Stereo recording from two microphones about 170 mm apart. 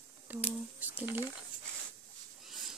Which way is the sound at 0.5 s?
10° right (ahead or behind).